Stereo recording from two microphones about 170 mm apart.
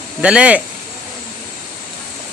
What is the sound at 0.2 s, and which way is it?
Speech, 5° right (ahead or behind).